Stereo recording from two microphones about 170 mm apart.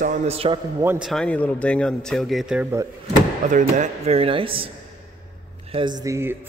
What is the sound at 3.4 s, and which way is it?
Speech, 45° right (ahead or behind).